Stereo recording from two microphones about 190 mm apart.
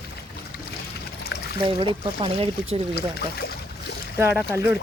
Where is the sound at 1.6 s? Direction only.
30° right (ahead or behind).